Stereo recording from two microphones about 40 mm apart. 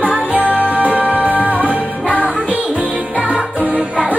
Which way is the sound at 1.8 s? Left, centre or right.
Left.